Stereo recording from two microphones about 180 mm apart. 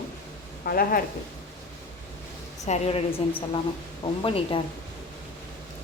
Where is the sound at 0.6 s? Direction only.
55° left (ahead or behind).